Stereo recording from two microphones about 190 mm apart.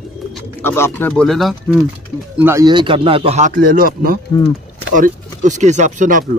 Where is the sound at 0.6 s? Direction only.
10° left (ahead or behind).